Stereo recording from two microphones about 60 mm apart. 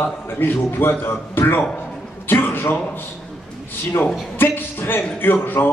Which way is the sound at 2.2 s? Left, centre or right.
Left.